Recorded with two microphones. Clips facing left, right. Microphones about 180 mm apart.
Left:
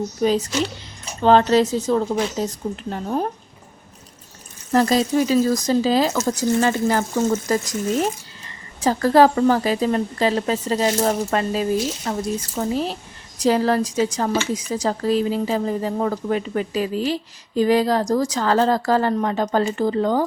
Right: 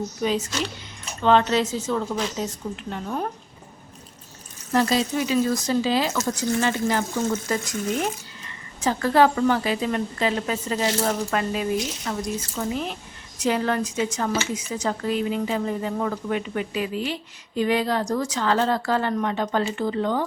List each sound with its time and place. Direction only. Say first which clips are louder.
0.2 s speech: left 6 dB; 35° left (ahead or behind)
4.7 s speech: left 4 dB; 40° left (ahead or behind)